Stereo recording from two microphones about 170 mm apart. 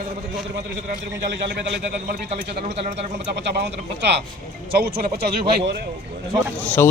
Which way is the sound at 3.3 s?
80° right.